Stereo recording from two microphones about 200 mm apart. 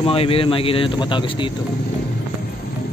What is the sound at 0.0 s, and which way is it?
Speech, 30° left (ahead or behind).